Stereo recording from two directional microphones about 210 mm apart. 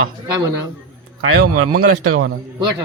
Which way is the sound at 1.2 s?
85° right.